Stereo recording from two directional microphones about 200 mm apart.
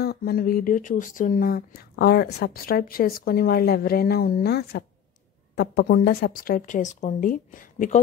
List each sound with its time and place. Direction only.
0.0 s speech: 50° left (ahead or behind)